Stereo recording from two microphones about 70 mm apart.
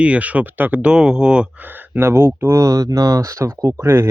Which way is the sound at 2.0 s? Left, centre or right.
Right.